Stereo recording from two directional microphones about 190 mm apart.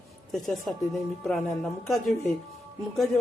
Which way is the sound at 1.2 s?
5° left (ahead or behind).